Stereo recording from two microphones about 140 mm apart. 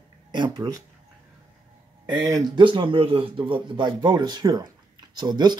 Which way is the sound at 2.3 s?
30° right (ahead or behind).